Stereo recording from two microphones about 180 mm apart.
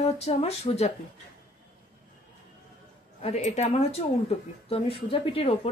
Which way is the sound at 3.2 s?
35° left (ahead or behind).